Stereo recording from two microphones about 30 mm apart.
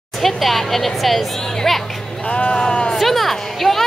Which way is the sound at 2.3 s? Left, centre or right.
Left.